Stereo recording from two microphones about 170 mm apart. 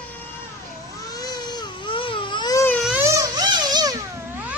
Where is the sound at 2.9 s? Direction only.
15° right (ahead or behind).